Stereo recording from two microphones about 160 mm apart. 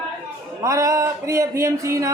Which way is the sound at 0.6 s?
20° right (ahead or behind).